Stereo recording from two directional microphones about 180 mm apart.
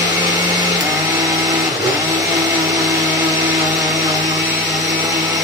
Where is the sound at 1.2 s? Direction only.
20° right (ahead or behind).